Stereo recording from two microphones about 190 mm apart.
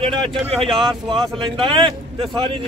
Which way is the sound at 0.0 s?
25° right (ahead or behind).